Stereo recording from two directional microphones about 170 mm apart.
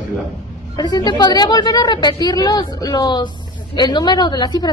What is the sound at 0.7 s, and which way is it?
A woman's voice, 25° left (ahead or behind).